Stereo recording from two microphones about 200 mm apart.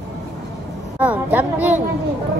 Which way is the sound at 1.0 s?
5° right (ahead or behind).